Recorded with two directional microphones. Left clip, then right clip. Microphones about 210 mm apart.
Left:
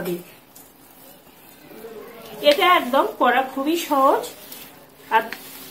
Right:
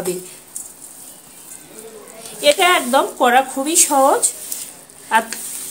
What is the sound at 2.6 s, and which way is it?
A woman's voice, 55° right (ahead or behind).